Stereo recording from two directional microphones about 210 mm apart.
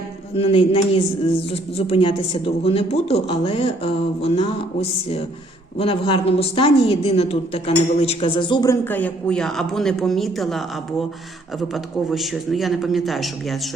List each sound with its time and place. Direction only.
0.3 s a woman's voice: 25° left (ahead or behind); by 10.6 s centre (ahead or behind)
11.7 s a man's voice: centre (ahead or behind)